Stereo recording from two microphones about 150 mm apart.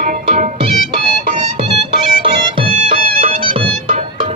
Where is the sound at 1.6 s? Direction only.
35° right (ahead or behind).